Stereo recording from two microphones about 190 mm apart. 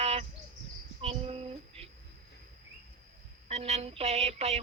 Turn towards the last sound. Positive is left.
turn(degrees=-35)  # may be behind; listen again after turning